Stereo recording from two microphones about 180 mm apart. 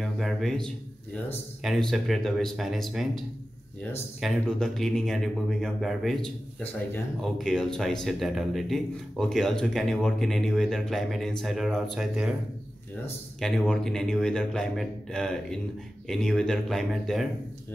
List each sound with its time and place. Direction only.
0.0 s a man's voice: centre (ahead or behind)
13.4 s speech: centre (ahead or behind)